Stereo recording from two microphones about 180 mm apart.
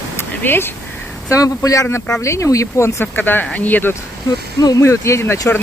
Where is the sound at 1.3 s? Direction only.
20° left (ahead or behind).